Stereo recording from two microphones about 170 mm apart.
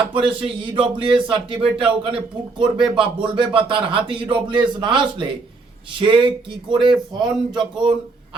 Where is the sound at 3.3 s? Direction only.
30° right (ahead or behind).